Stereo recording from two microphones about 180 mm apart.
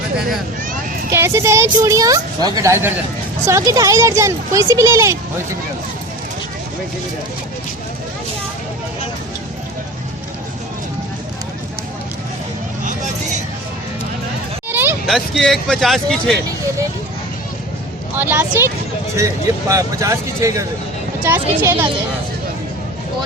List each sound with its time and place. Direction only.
1.1 s a woman's voice: 15° right (ahead or behind)
14.7 s a sound: 10° right (ahead or behind)
15.0 s speech: centre (ahead or behind)
18.2 s a woman's voice: 10° right (ahead or behind)